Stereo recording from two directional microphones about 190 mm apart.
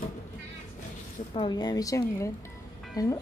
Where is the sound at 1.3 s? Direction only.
25° left (ahead or behind).